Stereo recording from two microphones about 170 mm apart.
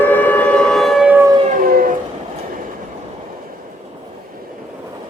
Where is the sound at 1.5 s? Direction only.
60° right (ahead or behind).